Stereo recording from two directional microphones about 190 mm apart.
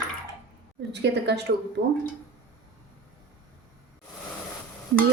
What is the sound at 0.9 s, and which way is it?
Speech, 60° right (ahead or behind).